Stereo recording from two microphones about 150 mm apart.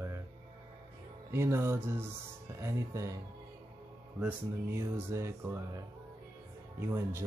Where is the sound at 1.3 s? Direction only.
15° right (ahead or behind).